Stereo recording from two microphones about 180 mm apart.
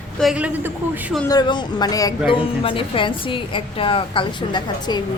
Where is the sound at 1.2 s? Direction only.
25° left (ahead or behind).